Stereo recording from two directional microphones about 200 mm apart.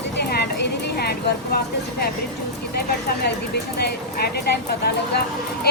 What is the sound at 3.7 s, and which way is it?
Speech, 55° left (ahead or behind).